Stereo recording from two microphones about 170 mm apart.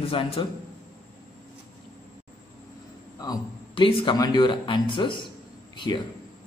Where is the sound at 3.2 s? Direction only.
25° left (ahead or behind).